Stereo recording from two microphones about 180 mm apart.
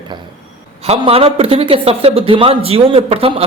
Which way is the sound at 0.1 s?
25° right (ahead or behind).